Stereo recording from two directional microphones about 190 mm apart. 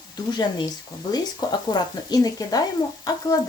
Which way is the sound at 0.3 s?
20° left (ahead or behind).